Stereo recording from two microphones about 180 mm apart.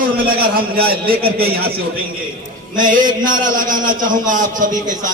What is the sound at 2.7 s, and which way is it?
A man's voice, 45° right (ahead or behind).